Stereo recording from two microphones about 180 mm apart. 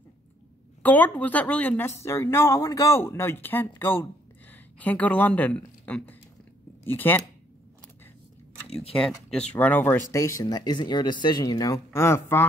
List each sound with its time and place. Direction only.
0.8 s speech: 10° left (ahead or behind)
9.5 s speech: 10° left (ahead or behind)